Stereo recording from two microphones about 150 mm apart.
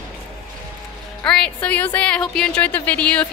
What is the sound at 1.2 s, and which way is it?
A woman's voice, 5° left (ahead or behind).